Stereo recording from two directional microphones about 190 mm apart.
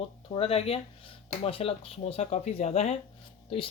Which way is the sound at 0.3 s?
30° left (ahead or behind).